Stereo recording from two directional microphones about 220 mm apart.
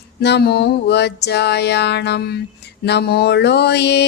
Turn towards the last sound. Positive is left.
turn(degrees=50)  # may be behind; listen again after turning